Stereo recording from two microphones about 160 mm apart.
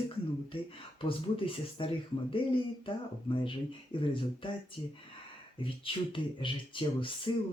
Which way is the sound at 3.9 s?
35° left (ahead or behind).